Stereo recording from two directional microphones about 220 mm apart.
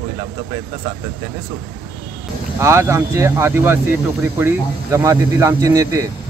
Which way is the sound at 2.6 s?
10° right (ahead or behind).